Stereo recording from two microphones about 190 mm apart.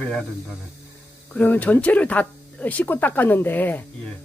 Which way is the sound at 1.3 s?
10° left (ahead or behind).